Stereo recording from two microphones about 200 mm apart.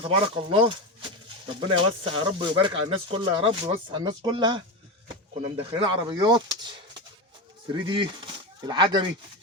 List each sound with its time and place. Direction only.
0.0 s speech: 25° right (ahead or behind)
2.0 s speech: 25° right (ahead or behind)